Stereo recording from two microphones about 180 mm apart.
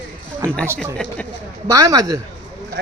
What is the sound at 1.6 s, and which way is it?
Speech, 20° right (ahead or behind).